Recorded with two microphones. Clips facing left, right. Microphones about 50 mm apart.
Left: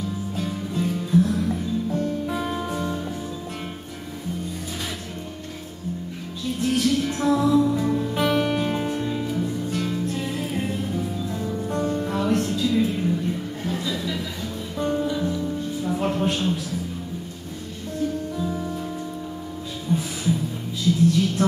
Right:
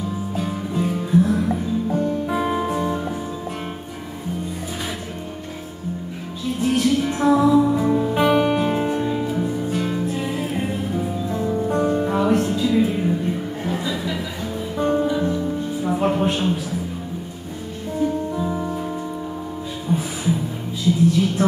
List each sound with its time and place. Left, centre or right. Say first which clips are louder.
0.4 s music: right 3 dB; centre
6.6 s music: right 3 dB; centre
17.9 s music: right 4 dB; centre
19.9 s music: right 2 dB; centre
21.4 s a sound: right 3 dB; centre